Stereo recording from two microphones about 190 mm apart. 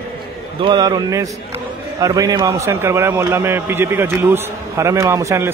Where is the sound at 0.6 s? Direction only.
25° right (ahead or behind).